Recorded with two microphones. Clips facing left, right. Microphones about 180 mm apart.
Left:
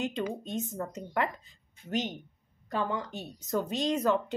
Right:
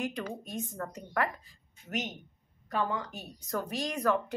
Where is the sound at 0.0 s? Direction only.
25° left (ahead or behind).